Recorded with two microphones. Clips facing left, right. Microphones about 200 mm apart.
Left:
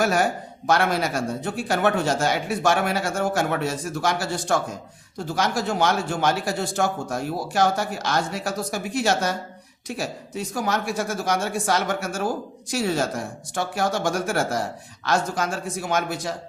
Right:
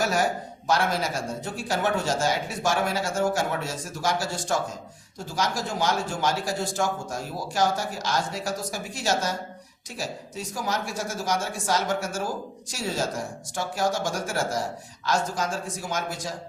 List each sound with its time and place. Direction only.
0.0 s speech: 60° left (ahead or behind)